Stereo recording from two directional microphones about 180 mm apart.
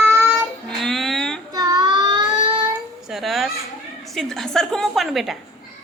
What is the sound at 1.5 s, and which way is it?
Child singing, 20° right (ahead or behind).